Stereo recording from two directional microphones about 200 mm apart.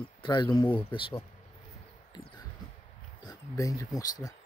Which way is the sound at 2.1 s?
20° left (ahead or behind).